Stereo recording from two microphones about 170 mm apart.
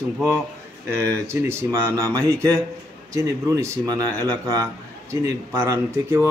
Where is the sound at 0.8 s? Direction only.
15° right (ahead or behind).